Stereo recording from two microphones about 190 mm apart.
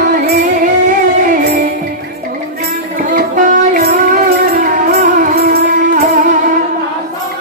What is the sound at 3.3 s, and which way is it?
Music, 50° right (ahead or behind).